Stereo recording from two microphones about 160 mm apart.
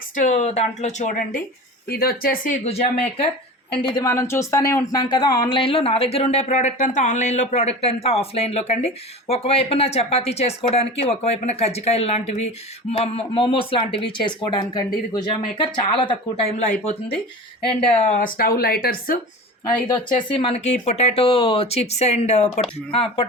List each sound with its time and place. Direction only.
0.2 s speech: 45° left (ahead or behind)
1.9 s speech: 70° left (ahead or behind)
2.6 s speech: 40° left (ahead or behind)
18.2 s speech: 65° left (ahead or behind)
19.9 s speech: 35° left (ahead or behind)